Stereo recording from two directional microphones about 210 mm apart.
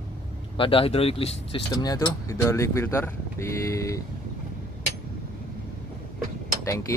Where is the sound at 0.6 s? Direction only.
25° left (ahead or behind).